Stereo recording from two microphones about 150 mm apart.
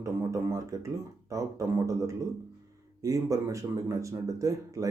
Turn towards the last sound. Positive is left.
turn(degrees=-20)  # may be behind; listen again after turning